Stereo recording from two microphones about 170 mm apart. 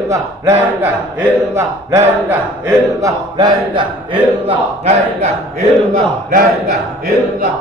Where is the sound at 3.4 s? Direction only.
25° right (ahead or behind).